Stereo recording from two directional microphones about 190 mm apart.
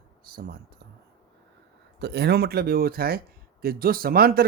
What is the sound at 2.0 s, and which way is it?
Speech, 60° right (ahead or behind).